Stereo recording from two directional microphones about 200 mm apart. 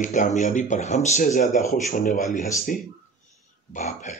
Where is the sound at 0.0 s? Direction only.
40° left (ahead or behind).